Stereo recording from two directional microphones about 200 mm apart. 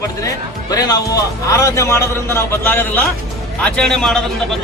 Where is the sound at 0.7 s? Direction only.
20° left (ahead or behind).